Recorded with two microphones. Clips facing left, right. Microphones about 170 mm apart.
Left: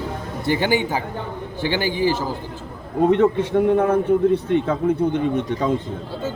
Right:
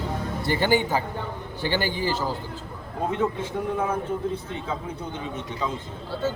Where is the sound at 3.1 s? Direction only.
65° left (ahead or behind).